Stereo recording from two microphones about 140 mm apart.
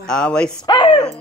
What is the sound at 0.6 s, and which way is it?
Speech, 30° left (ahead or behind).